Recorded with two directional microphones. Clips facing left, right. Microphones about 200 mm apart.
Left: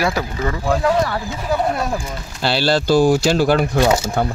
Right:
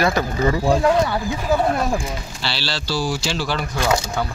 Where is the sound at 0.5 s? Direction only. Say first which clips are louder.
Even; 15° right (ahead or behind).